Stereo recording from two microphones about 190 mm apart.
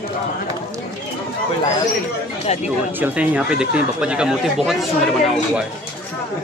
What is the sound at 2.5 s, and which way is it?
Speech, 35° left (ahead or behind).